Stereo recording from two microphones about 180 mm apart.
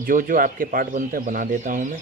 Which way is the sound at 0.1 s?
50° right (ahead or behind).